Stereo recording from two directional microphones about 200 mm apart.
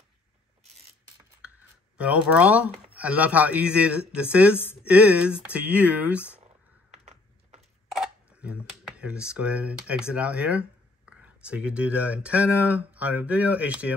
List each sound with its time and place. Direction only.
2.0 s speech: 5° right (ahead or behind)
6.9 s a sound: 35° right (ahead or behind)
7.9 s speech: 5° right (ahead or behind)